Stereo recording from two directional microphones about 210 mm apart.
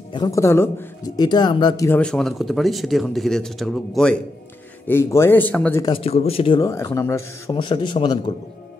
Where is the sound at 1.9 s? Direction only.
5° left (ahead or behind); by 8.4 s 20° left (ahead or behind).